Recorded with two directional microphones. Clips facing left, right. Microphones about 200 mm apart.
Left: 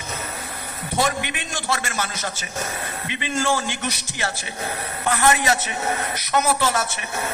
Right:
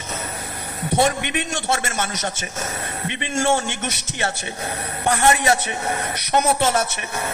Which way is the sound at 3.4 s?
25° right (ahead or behind).